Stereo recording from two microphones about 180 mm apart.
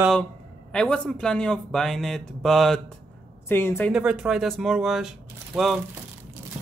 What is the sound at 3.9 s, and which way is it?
A man's voice, 5° right (ahead or behind).